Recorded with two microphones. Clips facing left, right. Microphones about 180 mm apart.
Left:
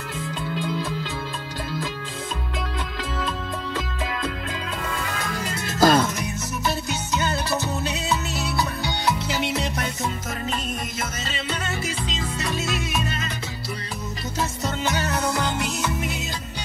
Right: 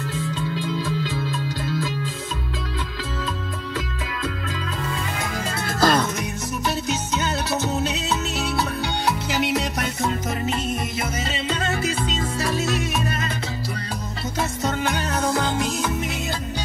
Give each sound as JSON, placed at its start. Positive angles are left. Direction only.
{"t": 5.8, "sound": "music", "side_deg": 10}